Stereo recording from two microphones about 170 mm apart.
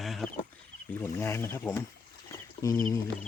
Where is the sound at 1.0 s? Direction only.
15° left (ahead or behind).